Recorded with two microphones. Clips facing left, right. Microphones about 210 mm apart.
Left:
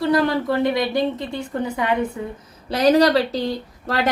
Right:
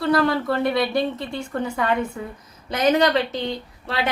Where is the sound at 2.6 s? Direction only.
35° left (ahead or behind).